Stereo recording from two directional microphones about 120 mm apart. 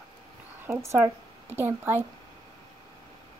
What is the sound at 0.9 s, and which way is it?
Speech, 20° right (ahead or behind).